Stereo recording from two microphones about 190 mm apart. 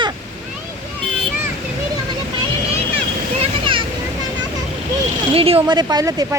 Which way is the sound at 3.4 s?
25° right (ahead or behind).